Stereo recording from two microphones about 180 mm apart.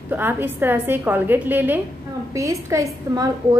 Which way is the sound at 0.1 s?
10° right (ahead or behind).